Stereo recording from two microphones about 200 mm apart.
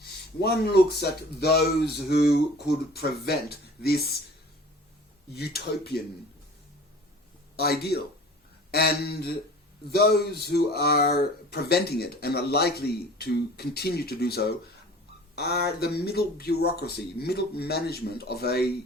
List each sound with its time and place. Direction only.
0.0 s a man's voice: 50° left (ahead or behind)
5.3 s speech: 50° left (ahead or behind)
7.5 s speech: 50° left (ahead or behind)